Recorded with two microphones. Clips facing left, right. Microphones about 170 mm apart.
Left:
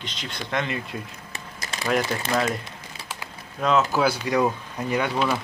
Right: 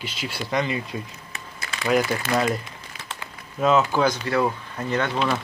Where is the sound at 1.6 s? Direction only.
40° left (ahead or behind).